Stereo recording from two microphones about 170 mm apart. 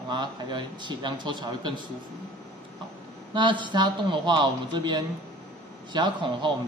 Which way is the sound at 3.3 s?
30° right (ahead or behind).